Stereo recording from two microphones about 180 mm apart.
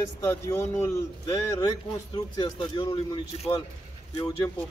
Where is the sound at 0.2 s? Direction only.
15° left (ahead or behind).